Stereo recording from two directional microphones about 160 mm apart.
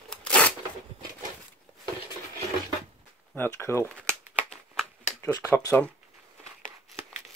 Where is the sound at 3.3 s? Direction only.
15° left (ahead or behind).